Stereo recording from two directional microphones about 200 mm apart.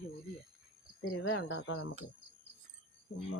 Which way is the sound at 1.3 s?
65° left (ahead or behind).